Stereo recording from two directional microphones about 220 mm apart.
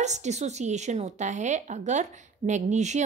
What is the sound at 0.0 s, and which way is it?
A woman's voice, 30° right (ahead or behind).